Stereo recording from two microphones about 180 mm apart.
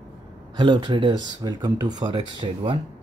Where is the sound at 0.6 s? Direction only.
25° right (ahead or behind).